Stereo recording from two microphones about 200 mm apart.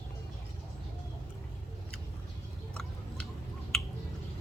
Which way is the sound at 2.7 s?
5° left (ahead or behind).